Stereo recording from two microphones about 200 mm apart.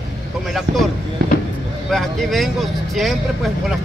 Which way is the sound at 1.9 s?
Centre (ahead or behind).